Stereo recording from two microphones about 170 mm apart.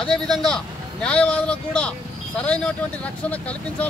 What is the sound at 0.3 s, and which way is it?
Speech, centre (ahead or behind).